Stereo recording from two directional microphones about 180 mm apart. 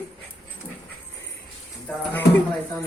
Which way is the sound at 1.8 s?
10° left (ahead or behind).